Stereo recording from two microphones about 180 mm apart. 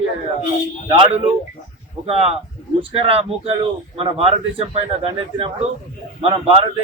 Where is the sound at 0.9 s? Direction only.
30° right (ahead or behind).